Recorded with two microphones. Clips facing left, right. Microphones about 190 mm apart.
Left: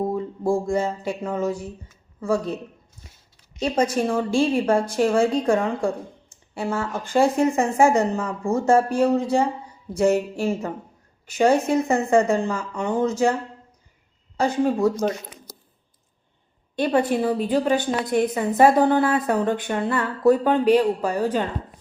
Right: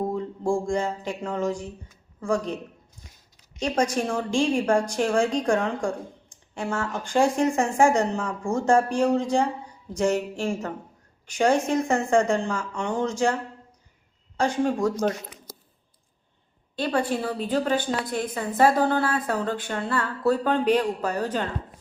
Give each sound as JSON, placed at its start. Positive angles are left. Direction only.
{"t": 0.0, "sound": "speech", "side_deg": 5}
{"t": 3.7, "sound": "a woman's voice", "side_deg": 5}
{"t": 14.6, "sound": "speech", "side_deg": 5}
{"t": 16.7, "sound": "a woman's voice", "side_deg": 20}